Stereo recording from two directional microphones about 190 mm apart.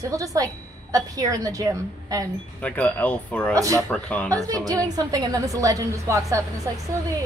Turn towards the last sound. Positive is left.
turn(degrees=-15)  # may be behind; listen again after turning